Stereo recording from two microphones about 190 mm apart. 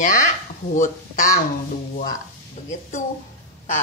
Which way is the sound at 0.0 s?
40° left (ahead or behind).